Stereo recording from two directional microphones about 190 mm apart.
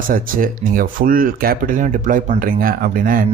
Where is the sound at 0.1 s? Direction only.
45° right (ahead or behind).